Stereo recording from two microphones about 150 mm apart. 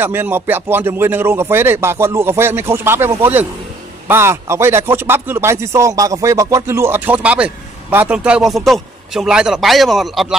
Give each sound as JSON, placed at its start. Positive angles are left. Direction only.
{"t": 0.0, "sound": "speech", "side_deg": -15}